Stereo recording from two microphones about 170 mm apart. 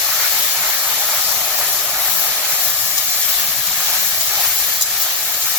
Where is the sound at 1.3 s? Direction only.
Centre (ahead or behind).